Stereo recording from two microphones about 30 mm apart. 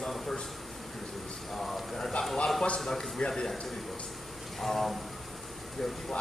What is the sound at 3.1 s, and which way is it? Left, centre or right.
Speech, left.